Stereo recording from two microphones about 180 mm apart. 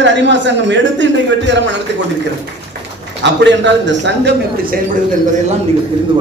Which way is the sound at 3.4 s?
80° right.